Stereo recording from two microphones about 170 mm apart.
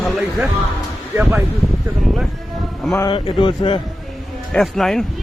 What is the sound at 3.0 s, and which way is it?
Speech, 30° left (ahead or behind).